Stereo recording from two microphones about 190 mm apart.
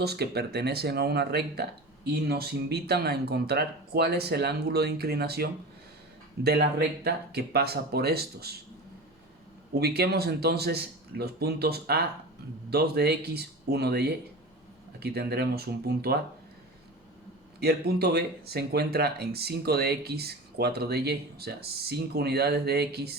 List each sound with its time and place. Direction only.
0.0 s speech: 60° right (ahead or behind)
9.7 s speech: 55° right (ahead or behind)
17.6 s speech: 55° right (ahead or behind)